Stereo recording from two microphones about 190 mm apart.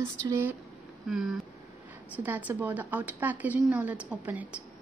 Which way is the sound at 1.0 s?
Centre (ahead or behind).